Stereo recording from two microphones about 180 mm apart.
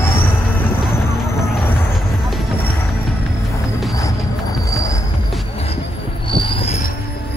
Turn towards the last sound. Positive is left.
turn(degrees=30)  # may be behind; listen again after turning